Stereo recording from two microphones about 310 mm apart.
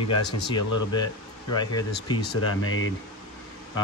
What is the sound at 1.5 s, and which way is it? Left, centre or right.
Speech, centre.